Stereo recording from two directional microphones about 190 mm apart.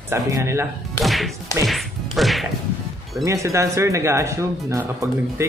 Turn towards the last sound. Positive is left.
turn(degrees=-15)  # may be behind; listen again after turning